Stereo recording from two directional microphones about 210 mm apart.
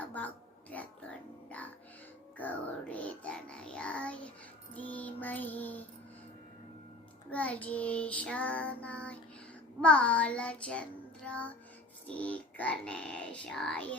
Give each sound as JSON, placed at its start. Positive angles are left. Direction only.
{"t": 0.0, "sound": "a sound", "side_deg": 5}
{"t": 1.5, "sound": "speech", "side_deg": 5}
{"t": 2.4, "sound": "child singing", "side_deg": 5}
{"t": 7.3, "sound": "child singing", "side_deg": 5}